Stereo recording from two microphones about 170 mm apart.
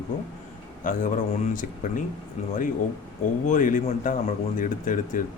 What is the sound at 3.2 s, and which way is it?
Speech, 50° left (ahead or behind).